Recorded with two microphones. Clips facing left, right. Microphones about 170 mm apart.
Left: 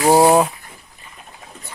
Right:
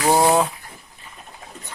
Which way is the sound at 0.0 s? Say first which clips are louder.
Left 5 dB; 30° left (ahead or behind).